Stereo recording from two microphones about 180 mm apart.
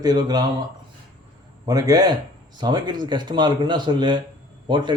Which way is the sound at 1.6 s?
20° right (ahead or behind).